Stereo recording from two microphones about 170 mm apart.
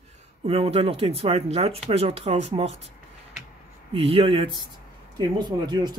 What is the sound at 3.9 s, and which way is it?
Speech, 35° right (ahead or behind).